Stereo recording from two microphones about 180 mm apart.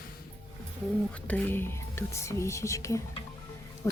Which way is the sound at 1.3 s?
10° left (ahead or behind).